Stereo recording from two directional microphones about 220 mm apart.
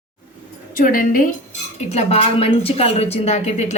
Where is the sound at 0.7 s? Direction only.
40° left (ahead or behind).